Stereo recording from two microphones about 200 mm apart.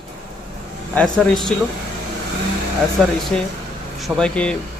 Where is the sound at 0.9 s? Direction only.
5° left (ahead or behind).